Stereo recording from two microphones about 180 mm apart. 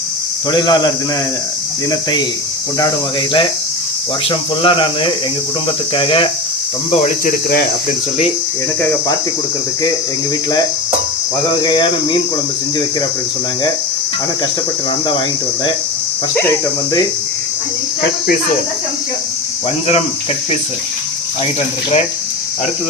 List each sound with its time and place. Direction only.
0.5 s speech: 25° left (ahead or behind)
4.3 s speech: 30° left (ahead or behind)
11.6 s speech: 25° left (ahead or behind)